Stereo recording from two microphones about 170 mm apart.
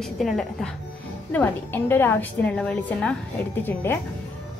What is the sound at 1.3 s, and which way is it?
A woman's voice, 10° left (ahead or behind).